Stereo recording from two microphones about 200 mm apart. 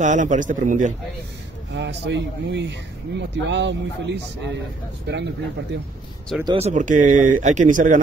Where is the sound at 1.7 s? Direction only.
60° right (ahead or behind).